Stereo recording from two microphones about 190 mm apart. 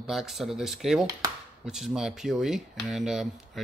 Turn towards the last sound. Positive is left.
turn(degrees=0)  # may be behind; listen again after turning